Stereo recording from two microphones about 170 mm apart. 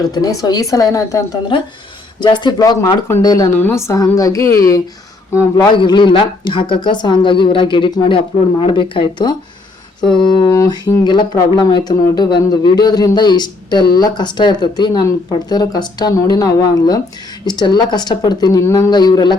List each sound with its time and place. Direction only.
0.1 s a woman's voice: 20° left (ahead or behind)